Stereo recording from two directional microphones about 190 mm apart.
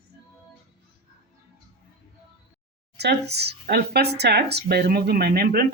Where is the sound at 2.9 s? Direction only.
60° right (ahead or behind).